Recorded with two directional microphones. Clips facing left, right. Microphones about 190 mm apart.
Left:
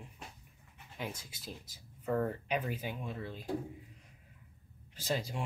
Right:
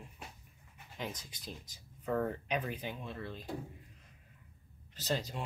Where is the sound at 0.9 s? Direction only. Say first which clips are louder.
Even; 10° left (ahead or behind).